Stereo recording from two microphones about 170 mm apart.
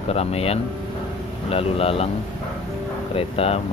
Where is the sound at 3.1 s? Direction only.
35° left (ahead or behind).